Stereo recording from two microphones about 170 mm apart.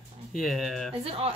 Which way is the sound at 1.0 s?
35° right (ahead or behind).